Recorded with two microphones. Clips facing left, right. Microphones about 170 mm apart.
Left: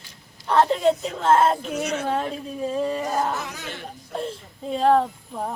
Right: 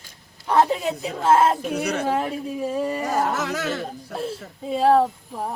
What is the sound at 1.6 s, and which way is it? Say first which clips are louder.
Speech: right 2 dB; 60° right (ahead or behind).